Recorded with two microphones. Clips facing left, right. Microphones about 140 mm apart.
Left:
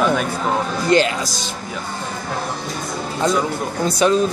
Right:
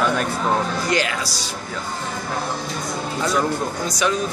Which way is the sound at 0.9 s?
25° left (ahead or behind).